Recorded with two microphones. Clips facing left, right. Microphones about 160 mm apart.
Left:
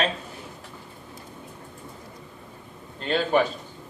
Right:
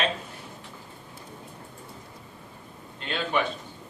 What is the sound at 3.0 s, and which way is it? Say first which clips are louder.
Speech: left 6 dB; 40° left (ahead or behind).